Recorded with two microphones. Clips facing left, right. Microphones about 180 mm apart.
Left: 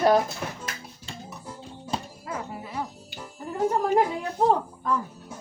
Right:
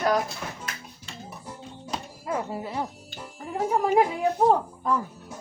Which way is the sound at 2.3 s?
30° right (ahead or behind).